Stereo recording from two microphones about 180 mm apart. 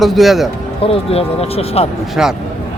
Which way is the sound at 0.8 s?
35° left (ahead or behind).